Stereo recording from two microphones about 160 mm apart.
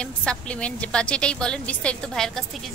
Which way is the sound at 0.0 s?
5° left (ahead or behind).